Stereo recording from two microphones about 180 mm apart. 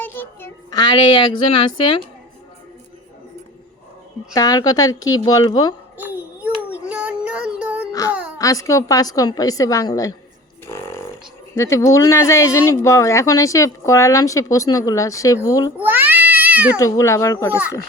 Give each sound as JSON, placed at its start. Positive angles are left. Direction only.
{"t": 0.0, "sound": "child singing", "side_deg": 10}
{"t": 4.4, "sound": "a woman's voice", "side_deg": 20}
{"t": 6.0, "sound": "a sound", "side_deg": -10}
{"t": 6.8, "sound": "female singing", "side_deg": -5}
{"t": 8.4, "sound": "a woman's voice", "side_deg": 20}
{"t": 10.7, "sound": "music", "side_deg": 15}
{"t": 11.5, "sound": "a woman's voice", "side_deg": 15}
{"t": 15.8, "sound": "cat", "side_deg": -10}
{"t": 16.7, "sound": "speech", "side_deg": 15}